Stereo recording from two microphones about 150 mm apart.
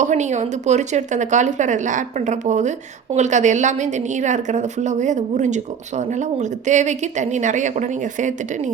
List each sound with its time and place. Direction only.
0.0 s a woman's voice: 50° right (ahead or behind)